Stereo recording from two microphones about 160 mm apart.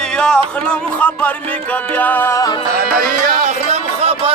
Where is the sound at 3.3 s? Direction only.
45° right (ahead or behind).